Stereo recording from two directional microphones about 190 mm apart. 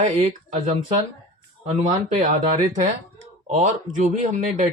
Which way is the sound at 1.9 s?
35° right (ahead or behind).